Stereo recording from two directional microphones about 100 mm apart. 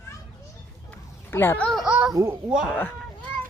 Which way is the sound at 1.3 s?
20° left (ahead or behind).